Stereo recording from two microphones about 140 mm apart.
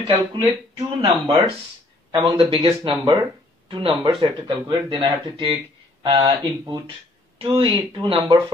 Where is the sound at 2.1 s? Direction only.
40° right (ahead or behind).